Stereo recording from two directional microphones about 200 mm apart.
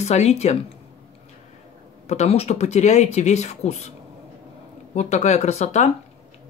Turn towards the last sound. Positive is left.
turn(degrees=35)  # may be behind; listen again after turning